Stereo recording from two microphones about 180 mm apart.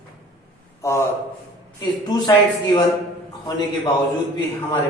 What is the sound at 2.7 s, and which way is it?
Speech, 20° left (ahead or behind).